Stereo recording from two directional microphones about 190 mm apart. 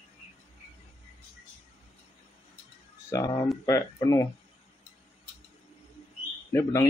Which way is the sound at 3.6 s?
15° left (ahead or behind).